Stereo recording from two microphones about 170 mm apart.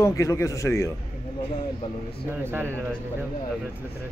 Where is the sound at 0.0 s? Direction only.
20° left (ahead or behind).